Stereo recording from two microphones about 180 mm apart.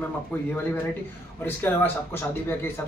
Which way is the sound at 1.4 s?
10° left (ahead or behind).